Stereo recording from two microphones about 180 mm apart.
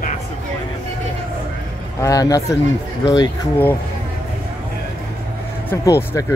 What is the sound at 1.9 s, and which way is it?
A man's voice, 20° left (ahead or behind).